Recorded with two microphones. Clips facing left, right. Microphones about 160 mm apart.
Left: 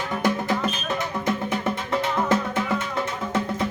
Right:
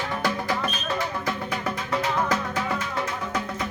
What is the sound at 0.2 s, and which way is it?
Music, 20° left (ahead or behind).